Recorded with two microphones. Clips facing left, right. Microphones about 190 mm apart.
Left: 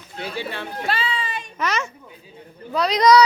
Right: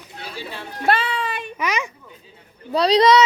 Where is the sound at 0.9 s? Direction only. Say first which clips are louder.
Right 6 dB; 60° right (ahead or behind).